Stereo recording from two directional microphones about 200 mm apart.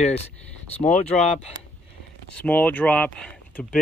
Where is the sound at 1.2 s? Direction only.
35° left (ahead or behind).